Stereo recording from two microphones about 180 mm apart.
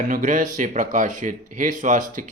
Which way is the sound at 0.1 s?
45° right (ahead or behind).